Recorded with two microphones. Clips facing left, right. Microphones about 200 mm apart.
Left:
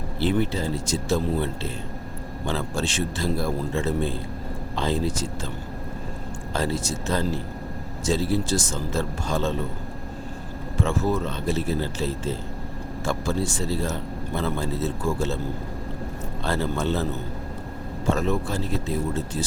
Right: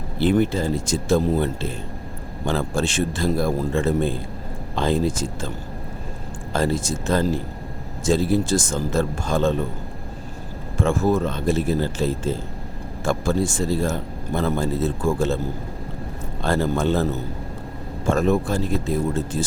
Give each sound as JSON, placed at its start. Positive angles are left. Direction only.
{"t": 0.2, "sound": "speech", "side_deg": -50}
{"t": 6.5, "sound": "speech", "side_deg": -50}
{"t": 10.8, "sound": "speech", "side_deg": -50}
{"t": 16.4, "sound": "speech", "side_deg": -50}